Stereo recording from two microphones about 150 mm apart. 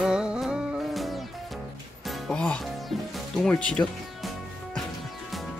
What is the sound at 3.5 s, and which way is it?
Speech, 5° left (ahead or behind).